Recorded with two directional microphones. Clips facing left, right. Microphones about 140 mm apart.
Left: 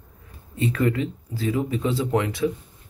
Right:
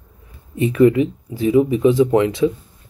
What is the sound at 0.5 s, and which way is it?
Speech, 20° right (ahead or behind).